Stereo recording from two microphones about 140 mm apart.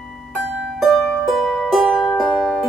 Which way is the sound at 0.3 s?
5° right (ahead or behind).